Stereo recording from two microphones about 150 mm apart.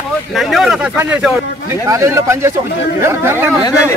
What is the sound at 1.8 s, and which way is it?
Speech, 20° right (ahead or behind).